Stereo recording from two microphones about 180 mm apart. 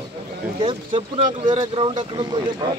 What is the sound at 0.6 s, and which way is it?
Speech, 25° right (ahead or behind).